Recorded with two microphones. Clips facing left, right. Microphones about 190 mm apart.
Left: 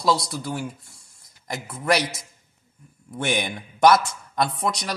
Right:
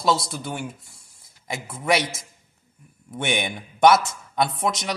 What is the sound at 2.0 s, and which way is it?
Speech, 25° right (ahead or behind).